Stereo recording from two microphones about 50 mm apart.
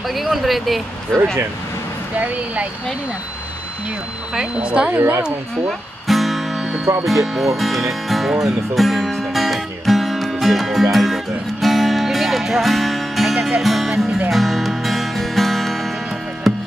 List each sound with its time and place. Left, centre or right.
0.1 s speech: centre
1.1 s speech: right
2.1 s speech: right
4.6 s speech: right
4.9 s a woman's voice: right
5.7 s music: centre
7.1 s speech: centre
8.7 s music: centre
13.6 s speech: centre
14.3 s music: centre